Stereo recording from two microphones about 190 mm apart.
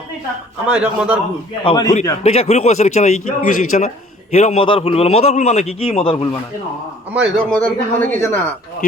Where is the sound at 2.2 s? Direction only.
35° left (ahead or behind).